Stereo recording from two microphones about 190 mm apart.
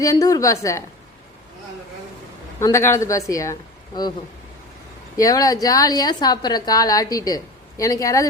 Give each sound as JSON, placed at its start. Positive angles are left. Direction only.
{"t": 0.0, "sound": "speech", "side_deg": 15}
{"t": 2.6, "sound": "speech", "side_deg": 15}
{"t": 5.1, "sound": "a woman's voice", "side_deg": 20}